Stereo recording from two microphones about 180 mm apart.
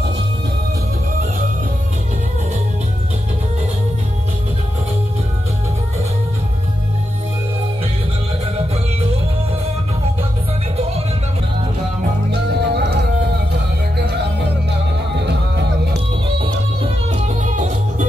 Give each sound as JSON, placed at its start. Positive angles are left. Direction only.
{"t": 10.8, "sound": "music", "side_deg": -35}
{"t": 12.3, "sound": "music", "side_deg": -70}
{"t": 15.9, "sound": "music", "side_deg": -30}